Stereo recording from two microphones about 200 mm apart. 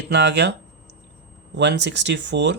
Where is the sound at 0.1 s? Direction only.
60° right (ahead or behind).